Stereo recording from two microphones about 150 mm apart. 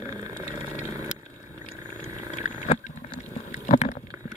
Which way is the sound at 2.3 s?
50° left (ahead or behind).